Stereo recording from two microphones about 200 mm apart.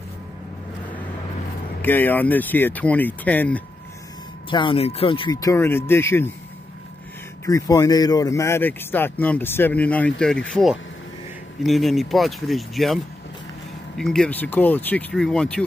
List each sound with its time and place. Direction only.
1.8 s speech: 10° left (ahead or behind)
4.5 s speech: 25° left (ahead or behind)
7.4 s speech: 15° left (ahead or behind)